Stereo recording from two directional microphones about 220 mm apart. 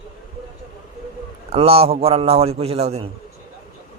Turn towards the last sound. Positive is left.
turn(degrees=-30)  # may be behind; listen again after turning